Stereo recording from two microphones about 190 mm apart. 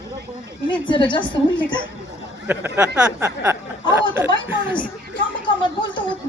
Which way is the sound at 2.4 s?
10° right (ahead or behind).